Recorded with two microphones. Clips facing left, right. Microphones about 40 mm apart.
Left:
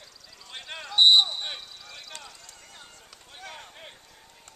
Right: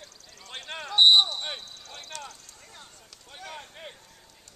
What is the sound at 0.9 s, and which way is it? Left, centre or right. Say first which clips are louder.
Basketball bounce: even; centre.